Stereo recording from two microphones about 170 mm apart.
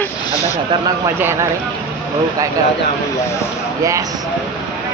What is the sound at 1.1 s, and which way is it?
Speech, 15° right (ahead or behind).